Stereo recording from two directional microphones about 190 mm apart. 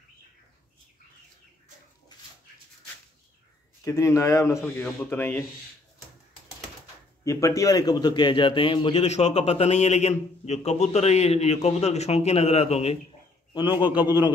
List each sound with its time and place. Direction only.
3.8 s a man's voice: 15° left (ahead or behind)
7.2 s a man's voice: 15° left (ahead or behind); by 12.9 s 35° left (ahead or behind)
13.5 s a man's voice: 25° left (ahead or behind)